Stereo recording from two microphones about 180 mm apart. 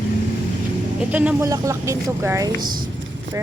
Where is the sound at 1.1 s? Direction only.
10° right (ahead or behind).